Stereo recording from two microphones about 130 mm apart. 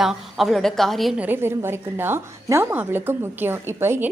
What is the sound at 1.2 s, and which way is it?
A woman's voice, 15° right (ahead or behind).